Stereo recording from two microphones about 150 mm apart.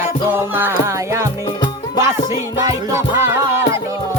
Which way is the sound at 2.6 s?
20° right (ahead or behind).